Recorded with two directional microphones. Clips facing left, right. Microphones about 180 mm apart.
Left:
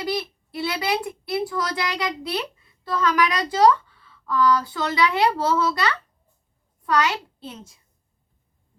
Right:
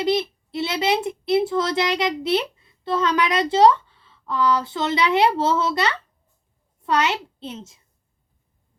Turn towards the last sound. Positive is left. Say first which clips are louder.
# right 4 dB
turn(degrees=-25)  # may be behind; listen again after turning